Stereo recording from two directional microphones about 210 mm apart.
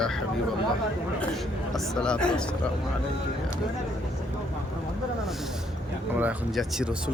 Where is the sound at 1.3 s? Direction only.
Centre (ahead or behind).